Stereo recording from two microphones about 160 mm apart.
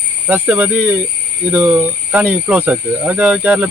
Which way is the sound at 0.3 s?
10° right (ahead or behind).